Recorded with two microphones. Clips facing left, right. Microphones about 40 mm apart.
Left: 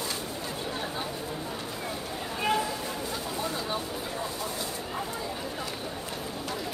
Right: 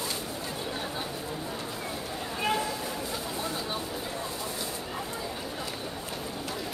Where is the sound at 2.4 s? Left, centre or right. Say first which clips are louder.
Left 2 dB; centre.